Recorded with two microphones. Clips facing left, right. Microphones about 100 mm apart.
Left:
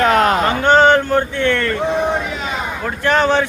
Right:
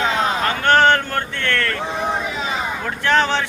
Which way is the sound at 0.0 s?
70° left (ahead or behind).